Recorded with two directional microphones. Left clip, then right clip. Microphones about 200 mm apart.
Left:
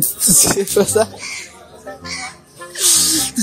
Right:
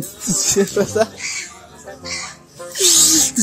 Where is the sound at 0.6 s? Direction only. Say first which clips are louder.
Left 2 dB; 20° left (ahead or behind).